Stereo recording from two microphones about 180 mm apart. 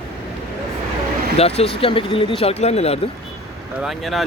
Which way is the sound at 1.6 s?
30° left (ahead or behind).